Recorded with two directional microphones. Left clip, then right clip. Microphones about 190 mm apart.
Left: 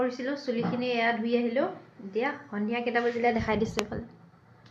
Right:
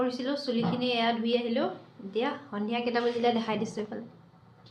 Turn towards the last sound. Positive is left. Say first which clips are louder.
# left 4 dB
turn(degrees=20)  # may be behind; listen again after turning